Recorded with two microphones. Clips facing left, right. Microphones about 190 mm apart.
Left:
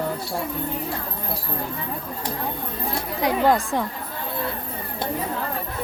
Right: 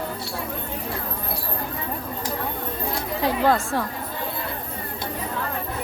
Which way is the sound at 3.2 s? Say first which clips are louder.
Left 1 dB; 15° left (ahead or behind).